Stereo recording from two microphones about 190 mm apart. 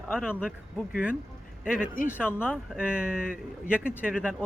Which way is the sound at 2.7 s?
5° right (ahead or behind).